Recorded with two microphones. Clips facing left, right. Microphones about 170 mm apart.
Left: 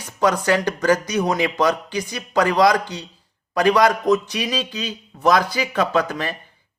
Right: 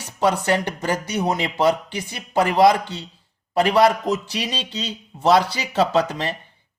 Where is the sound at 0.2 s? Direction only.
25° right (ahead or behind).